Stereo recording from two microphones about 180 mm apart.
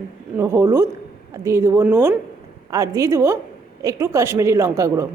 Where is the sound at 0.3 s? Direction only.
15° right (ahead or behind).